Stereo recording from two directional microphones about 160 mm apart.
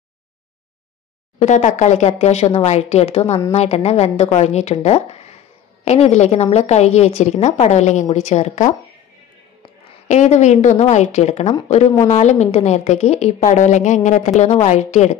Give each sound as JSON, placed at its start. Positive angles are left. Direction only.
{"t": 1.4, "sound": "a woman's voice", "side_deg": 50}
{"t": 9.8, "sound": "a woman's voice", "side_deg": 45}